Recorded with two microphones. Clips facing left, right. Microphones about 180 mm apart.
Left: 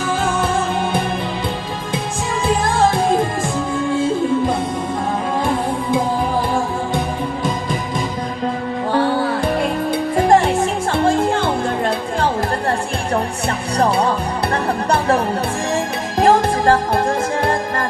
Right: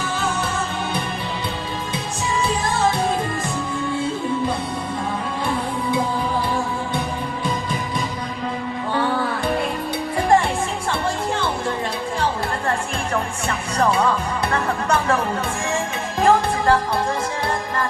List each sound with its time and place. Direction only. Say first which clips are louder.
8.9 s music: left 5 dB; 40° left (ahead or behind)
13.7 s music: left 2 dB; 35° left (ahead or behind)